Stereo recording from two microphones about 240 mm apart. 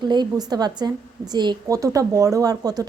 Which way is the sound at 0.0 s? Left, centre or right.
Centre.